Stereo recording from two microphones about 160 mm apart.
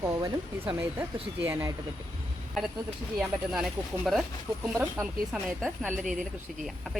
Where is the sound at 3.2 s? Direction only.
5° right (ahead or behind).